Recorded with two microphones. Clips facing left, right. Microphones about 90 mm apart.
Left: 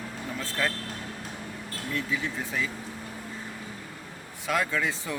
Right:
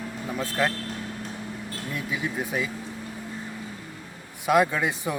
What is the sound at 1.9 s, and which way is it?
Speech, 15° right (ahead or behind).